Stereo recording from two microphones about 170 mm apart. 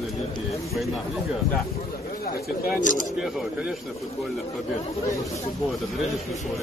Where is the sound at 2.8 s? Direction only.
50° left (ahead or behind).